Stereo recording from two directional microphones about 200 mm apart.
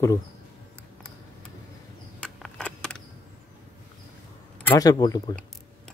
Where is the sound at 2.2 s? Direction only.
5° left (ahead or behind).